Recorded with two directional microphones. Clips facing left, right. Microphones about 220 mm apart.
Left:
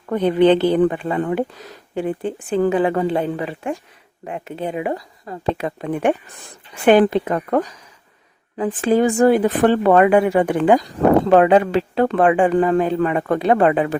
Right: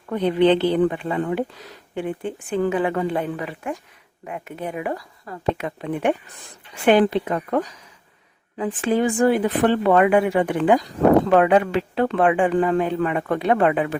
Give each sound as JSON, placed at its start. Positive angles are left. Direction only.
{"t": 0.1, "sound": "speech", "side_deg": 45}
{"t": 2.0, "sound": "a woman's voice", "side_deg": 35}
{"t": 5.8, "sound": "speech", "side_deg": 45}
{"t": 11.3, "sound": "speech", "side_deg": 30}